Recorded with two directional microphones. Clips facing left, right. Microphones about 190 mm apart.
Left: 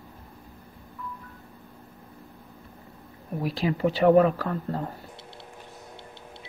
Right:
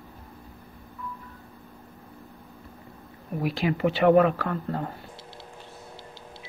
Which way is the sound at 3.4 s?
35° left (ahead or behind).